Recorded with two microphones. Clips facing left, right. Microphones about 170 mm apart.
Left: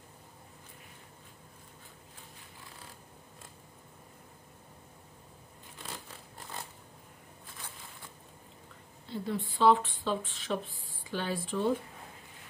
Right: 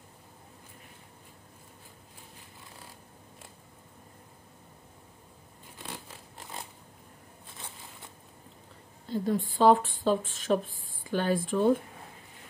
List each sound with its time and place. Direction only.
9.1 s speech: 45° right (ahead or behind)